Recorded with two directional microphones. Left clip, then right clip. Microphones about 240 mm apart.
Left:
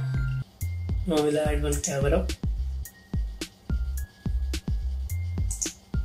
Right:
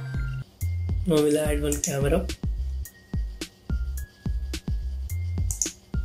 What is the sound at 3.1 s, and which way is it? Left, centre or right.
Music, centre.